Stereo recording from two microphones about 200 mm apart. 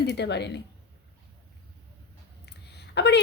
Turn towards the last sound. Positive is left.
turn(degrees=60)  # may be behind; listen again after turning